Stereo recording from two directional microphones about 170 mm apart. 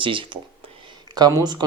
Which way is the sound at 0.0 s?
30° right (ahead or behind).